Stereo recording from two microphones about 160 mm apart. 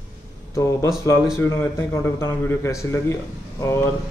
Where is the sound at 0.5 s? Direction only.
20° left (ahead or behind).